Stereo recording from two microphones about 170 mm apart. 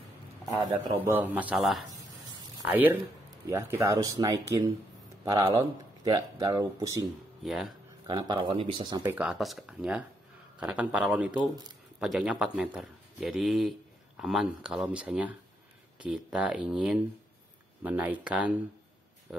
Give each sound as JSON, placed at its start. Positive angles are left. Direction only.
{"t": 0.6, "sound": "a man's voice", "side_deg": -20}
{"t": 7.4, "sound": "a man's voice", "side_deg": 0}
{"t": 8.1, "sound": "speech", "side_deg": -25}
{"t": 9.1, "sound": "a man's voice", "side_deg": -5}